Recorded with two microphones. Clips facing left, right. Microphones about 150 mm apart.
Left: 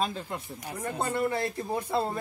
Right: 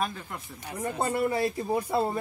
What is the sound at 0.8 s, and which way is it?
Speech, 15° right (ahead or behind).